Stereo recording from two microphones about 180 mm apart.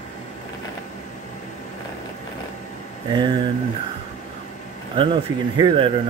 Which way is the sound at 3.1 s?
25° right (ahead or behind).